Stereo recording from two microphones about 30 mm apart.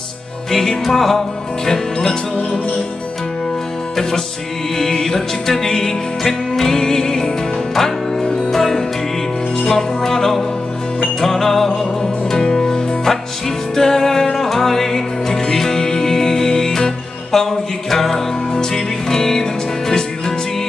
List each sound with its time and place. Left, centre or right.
0.5 s music: centre
4.9 s music: centre
18.5 s music: centre